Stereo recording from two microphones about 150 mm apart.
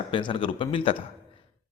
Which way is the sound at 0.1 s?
35° left (ahead or behind).